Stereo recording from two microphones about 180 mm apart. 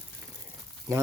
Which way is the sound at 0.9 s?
15° right (ahead or behind).